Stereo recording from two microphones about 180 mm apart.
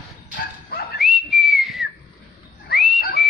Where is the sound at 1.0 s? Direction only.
Centre (ahead or behind).